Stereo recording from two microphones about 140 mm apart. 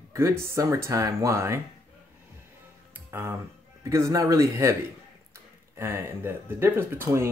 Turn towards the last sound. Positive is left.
turn(degrees=-15)  # may be behind; listen again after turning